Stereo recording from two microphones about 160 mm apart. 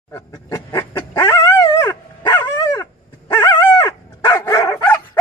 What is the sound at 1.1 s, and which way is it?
Dog, 30° left (ahead or behind).